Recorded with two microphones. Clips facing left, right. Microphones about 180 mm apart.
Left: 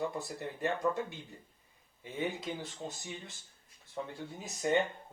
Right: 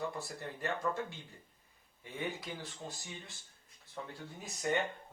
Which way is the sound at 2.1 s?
20° left (ahead or behind).